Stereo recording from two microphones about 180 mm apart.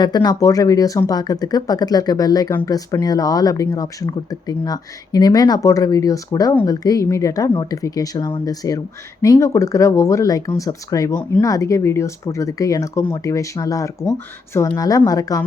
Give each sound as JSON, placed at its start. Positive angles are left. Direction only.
{"t": 0.0, "sound": "speech", "side_deg": 25}
{"t": 11.1, "sound": "speech", "side_deg": 10}
{"t": 11.4, "sound": "speech", "side_deg": 20}